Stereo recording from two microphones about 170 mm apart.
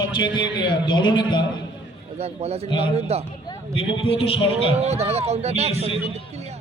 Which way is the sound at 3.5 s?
35° left (ahead or behind).